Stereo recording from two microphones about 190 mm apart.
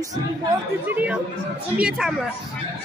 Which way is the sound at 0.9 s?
10° right (ahead or behind).